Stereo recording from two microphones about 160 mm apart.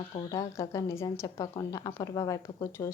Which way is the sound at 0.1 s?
25° left (ahead or behind).